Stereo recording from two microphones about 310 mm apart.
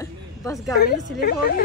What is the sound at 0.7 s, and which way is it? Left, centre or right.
Speech, left.